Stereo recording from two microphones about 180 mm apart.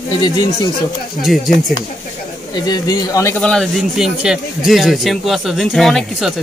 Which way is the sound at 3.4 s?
5° left (ahead or behind).